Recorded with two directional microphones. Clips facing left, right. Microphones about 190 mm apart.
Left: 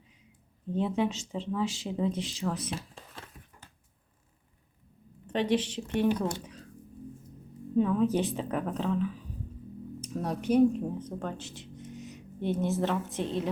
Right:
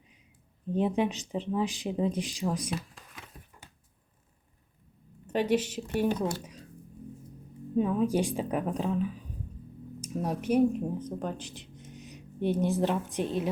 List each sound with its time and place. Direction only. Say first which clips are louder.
0.7 s speech: right 1 dB; 15° right (ahead or behind)
5.2 s speech: right 1 dB; 10° right (ahead or behind)
7.8 s speech: left 1 dB; 10° right (ahead or behind)
10.0 s a sound: right 1 dB; 10° right (ahead or behind)
10.5 s speech: left 2 dB; 10° right (ahead or behind)